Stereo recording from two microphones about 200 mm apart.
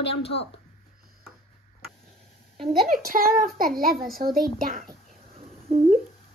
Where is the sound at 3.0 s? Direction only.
45° right (ahead or behind).